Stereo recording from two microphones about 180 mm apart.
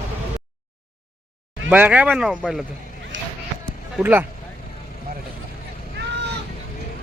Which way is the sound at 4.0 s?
10° right (ahead or behind).